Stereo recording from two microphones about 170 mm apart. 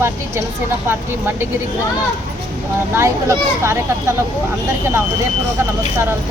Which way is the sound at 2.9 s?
15° right (ahead or behind).